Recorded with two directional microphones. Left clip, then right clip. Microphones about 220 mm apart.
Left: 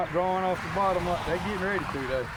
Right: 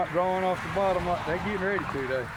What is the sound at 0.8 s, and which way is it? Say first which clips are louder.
Speech: even; 20° left (ahead or behind).